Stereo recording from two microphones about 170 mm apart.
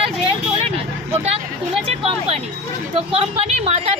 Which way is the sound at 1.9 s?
35° right (ahead or behind).